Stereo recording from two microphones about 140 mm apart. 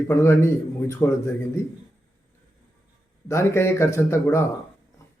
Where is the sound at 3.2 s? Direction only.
20° left (ahead or behind).